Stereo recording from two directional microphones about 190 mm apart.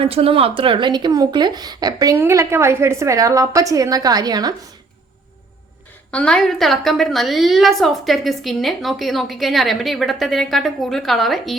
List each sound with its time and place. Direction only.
0.0 s speech: 30° right (ahead or behind)
6.1 s a woman's voice: 5° left (ahead or behind)